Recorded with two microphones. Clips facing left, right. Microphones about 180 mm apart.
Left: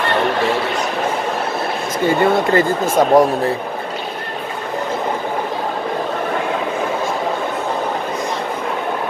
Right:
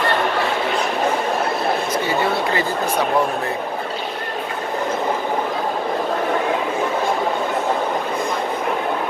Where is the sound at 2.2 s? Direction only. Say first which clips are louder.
Left 6 dB; 50° left (ahead or behind).